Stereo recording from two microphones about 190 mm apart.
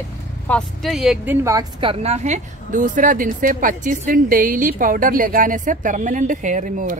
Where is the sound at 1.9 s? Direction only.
35° right (ahead or behind).